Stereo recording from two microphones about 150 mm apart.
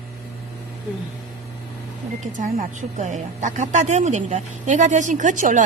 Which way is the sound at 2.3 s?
50° right (ahead or behind).